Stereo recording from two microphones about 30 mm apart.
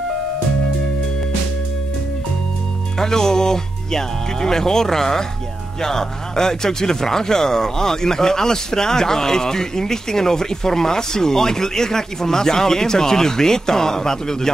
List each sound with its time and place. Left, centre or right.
3.0 s speech: centre